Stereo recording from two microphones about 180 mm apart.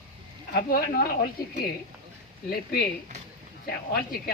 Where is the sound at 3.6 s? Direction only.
60° left (ahead or behind).